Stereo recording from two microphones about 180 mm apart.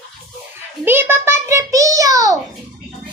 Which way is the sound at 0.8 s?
10° right (ahead or behind).